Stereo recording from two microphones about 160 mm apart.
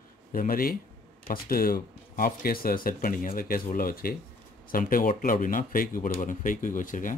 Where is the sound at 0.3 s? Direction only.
60° left (ahead or behind).